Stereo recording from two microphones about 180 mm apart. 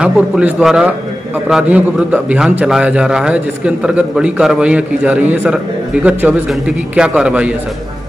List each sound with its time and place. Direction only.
0.0 s a man's voice: 5° right (ahead or behind)